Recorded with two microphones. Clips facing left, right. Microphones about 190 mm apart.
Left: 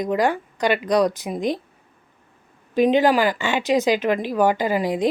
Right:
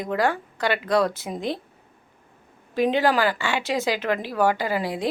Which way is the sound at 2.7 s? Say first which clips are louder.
Left 4 dB; 15° left (ahead or behind).